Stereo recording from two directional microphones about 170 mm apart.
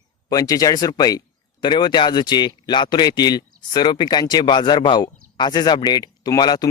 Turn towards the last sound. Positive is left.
turn(degrees=25)  # may be behind; listen again after turning